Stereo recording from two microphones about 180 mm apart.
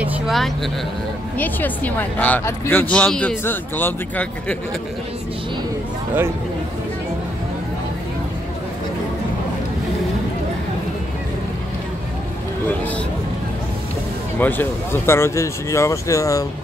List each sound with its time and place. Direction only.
0.0 s vehicle: 5° right (ahead or behind)
1.4 s speech: 10° left (ahead or behind)
14.4 s speech: 10° left (ahead or behind)